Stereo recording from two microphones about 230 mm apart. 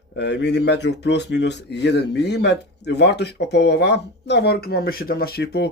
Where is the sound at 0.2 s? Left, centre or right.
Left.